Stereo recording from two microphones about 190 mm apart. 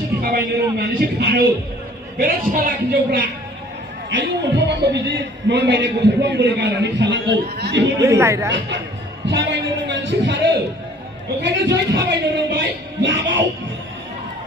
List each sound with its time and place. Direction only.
0.2 s speech: 55° right (ahead or behind)
2.1 s a man's voice: 45° right (ahead or behind)
4.1 s a man's voice: 70° right (ahead or behind)
8.0 s a woman's voice: 15° right (ahead or behind)
9.2 s a man's voice: 70° right (ahead or behind)